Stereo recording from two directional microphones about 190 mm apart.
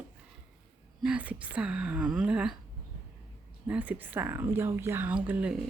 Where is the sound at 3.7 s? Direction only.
10° right (ahead or behind).